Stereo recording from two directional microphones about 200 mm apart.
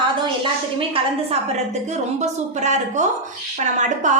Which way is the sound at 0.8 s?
30° right (ahead or behind).